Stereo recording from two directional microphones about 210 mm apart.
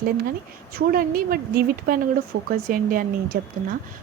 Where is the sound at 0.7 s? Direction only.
45° right (ahead or behind).